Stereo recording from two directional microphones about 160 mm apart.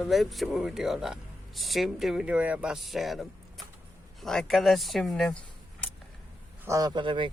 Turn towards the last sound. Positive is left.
turn(degrees=-30)  # may be behind; listen again after turning